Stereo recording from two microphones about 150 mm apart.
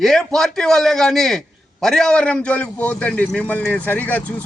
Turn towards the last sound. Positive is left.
turn(degrees=10)  # may be behind; listen again after turning